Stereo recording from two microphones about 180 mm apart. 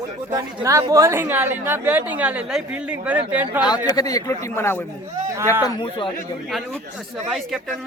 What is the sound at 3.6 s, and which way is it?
Speech, 25° left (ahead or behind).